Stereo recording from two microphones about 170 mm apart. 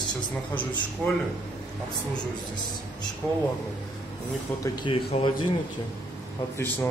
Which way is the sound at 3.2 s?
15° left (ahead or behind).